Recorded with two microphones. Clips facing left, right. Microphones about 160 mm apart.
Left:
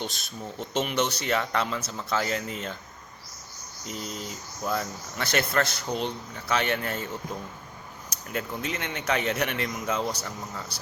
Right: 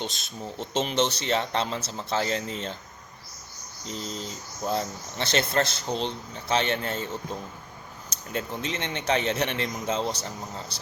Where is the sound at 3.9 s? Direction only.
30° right (ahead or behind).